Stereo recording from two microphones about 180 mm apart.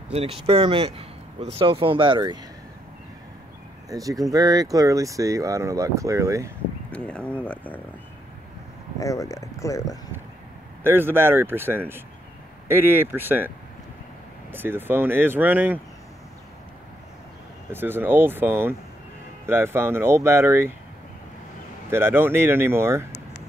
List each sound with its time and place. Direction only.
0.1 s speech: 35° right (ahead or behind)
3.9 s speech: 20° right (ahead or behind)
6.9 s speech: 5° left (ahead or behind)
9.0 s speech: 20° left (ahead or behind)
10.8 s speech: 10° right (ahead or behind)
14.5 s speech: 10° right (ahead or behind)
17.6 s speech: 10° right (ahead or behind)
21.9 s speech: 15° right (ahead or behind)